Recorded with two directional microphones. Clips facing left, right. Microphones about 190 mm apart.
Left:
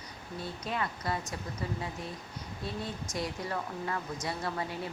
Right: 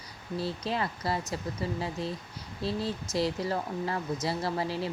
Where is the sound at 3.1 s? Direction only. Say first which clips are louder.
Right 6 dB; 30° right (ahead or behind).